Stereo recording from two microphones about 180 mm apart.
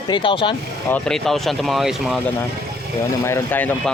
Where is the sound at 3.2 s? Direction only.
15° left (ahead or behind).